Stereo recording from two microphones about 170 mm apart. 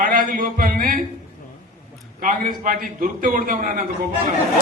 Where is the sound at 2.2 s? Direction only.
50° right (ahead or behind).